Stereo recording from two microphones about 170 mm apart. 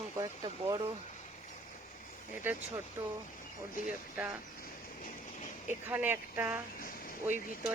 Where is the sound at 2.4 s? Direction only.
10° right (ahead or behind).